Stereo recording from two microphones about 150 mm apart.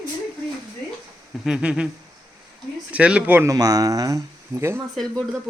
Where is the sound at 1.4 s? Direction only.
5° right (ahead or behind).